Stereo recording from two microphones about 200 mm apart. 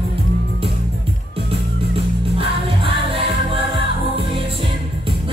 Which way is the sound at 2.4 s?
25° right (ahead or behind).